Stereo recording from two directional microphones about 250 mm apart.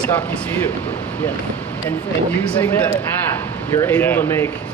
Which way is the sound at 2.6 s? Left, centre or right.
Centre.